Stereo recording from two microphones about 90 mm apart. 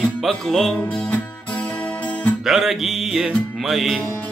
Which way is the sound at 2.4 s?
Centre (ahead or behind).